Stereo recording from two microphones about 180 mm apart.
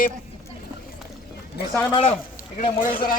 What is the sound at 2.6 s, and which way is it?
Speech, 50° left (ahead or behind).